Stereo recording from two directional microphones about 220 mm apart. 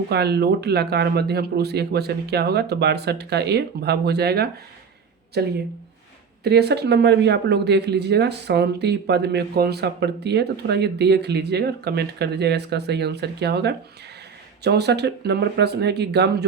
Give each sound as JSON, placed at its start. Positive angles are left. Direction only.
{"t": 0.1, "sound": "speech", "side_deg": -45}